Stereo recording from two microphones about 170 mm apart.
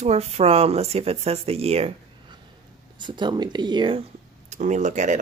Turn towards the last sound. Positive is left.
turn(degrees=-45)  # may be behind; listen again after turning